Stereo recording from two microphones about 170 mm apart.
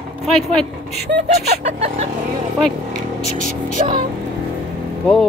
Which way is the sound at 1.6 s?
40° right (ahead or behind).